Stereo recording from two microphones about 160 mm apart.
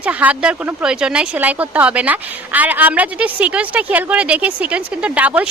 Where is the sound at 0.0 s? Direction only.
10° right (ahead or behind).